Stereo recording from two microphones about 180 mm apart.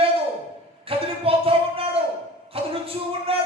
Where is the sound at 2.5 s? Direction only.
30° right (ahead or behind).